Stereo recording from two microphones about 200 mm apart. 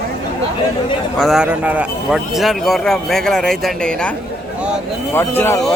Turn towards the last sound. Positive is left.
turn(degrees=10)  # may be behind; listen again after turning